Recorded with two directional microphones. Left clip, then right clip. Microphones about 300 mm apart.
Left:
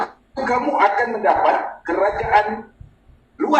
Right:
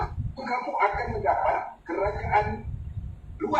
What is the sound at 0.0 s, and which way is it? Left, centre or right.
Speech, left.